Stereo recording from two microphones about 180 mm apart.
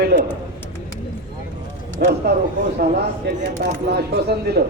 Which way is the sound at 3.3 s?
65° right (ahead or behind).